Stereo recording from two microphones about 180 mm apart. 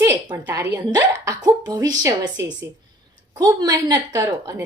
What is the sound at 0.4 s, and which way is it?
A woman's voice, 15° right (ahead or behind).